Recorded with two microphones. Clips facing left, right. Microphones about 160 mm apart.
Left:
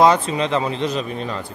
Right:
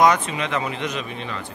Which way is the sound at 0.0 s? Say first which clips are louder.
Left 3 dB; 30° left (ahead or behind).